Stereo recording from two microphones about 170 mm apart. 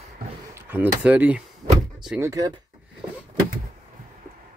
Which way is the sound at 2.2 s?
20° right (ahead or behind).